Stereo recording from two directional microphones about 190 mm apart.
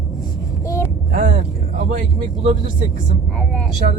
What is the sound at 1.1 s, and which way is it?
Speech, 45° right (ahead or behind).